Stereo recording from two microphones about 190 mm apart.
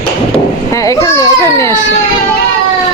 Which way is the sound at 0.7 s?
15° left (ahead or behind).